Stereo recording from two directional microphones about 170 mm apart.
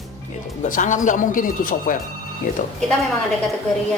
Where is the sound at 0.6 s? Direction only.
50° left (ahead or behind).